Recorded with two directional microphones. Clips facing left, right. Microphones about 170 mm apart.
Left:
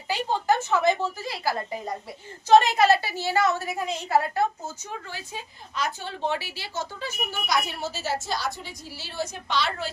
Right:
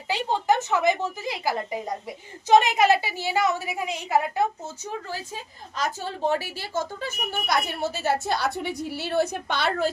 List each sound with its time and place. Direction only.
0.1 s a woman's voice: 20° right (ahead or behind)
4.6 s speech: 35° right (ahead or behind); by 9.9 s 50° right (ahead or behind)